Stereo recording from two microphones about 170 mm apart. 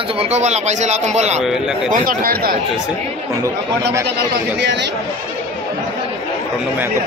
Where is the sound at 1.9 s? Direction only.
55° right (ahead or behind).